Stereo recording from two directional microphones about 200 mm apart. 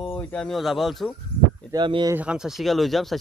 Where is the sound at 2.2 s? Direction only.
5° right (ahead or behind).